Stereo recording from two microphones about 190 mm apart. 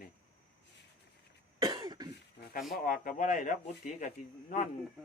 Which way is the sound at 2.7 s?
50° left (ahead or behind).